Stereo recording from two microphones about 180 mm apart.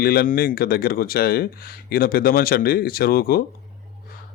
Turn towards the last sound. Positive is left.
turn(degrees=55)  # may be behind; listen again after turning